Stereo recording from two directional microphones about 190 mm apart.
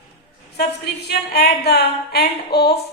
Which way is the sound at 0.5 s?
60° left (ahead or behind).